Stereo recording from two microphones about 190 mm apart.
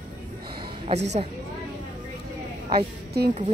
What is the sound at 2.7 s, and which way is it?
Speech, 60° right (ahead or behind).